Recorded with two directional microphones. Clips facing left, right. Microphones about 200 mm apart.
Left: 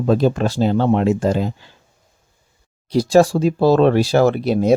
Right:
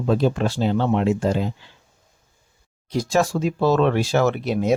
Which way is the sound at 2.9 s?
35° left (ahead or behind).